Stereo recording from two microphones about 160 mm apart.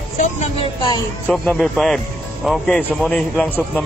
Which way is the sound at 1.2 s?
Centre (ahead or behind).